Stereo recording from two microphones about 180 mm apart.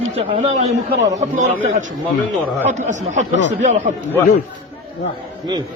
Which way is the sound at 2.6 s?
45° right (ahead or behind).